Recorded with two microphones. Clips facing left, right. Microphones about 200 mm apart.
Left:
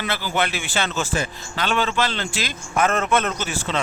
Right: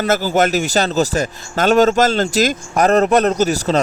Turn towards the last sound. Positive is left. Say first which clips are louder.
# right 10 dB
turn(degrees=-40)  # may be behind; listen again after turning